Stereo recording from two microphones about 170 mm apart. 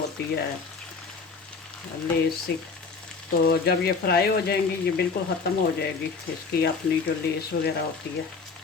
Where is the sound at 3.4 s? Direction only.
65° left (ahead or behind).